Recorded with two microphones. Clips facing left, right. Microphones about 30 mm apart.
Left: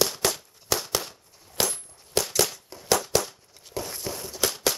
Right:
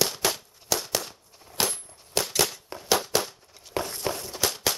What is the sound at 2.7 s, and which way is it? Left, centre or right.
Typewriter, right.